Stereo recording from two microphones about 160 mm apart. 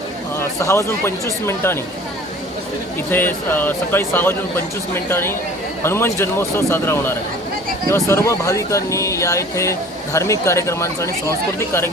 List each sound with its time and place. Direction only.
0.3 s speech: 15° left (ahead or behind)
3.1 s speech: 15° left (ahead or behind)